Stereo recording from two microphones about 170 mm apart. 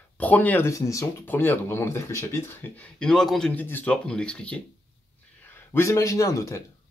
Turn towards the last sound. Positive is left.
turn(degrees=20)  # may be behind; listen again after turning